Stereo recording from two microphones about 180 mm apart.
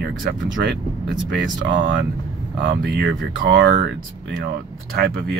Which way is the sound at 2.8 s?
70° right (ahead or behind).